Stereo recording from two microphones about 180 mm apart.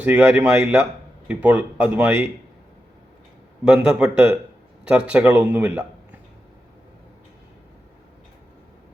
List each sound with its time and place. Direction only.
0.0 s a man's voice: 5° right (ahead or behind)
3.6 s a man's voice: 5° right (ahead or behind)